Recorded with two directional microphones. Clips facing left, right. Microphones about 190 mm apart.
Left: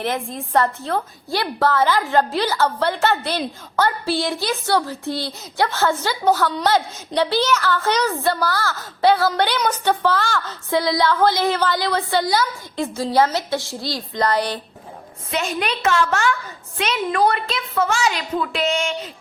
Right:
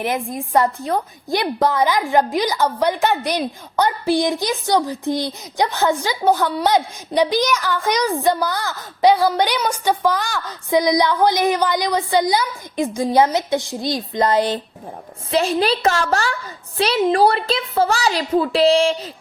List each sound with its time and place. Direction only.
0.3 s a woman's voice: 15° right (ahead or behind)
15.3 s a woman's voice: 30° right (ahead or behind)